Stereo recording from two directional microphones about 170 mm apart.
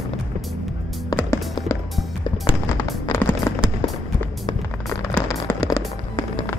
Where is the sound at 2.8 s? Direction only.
15° left (ahead or behind).